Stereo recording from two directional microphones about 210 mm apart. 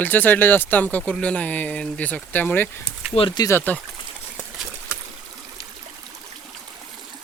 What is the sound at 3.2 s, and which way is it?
Speech, 20° left (ahead or behind).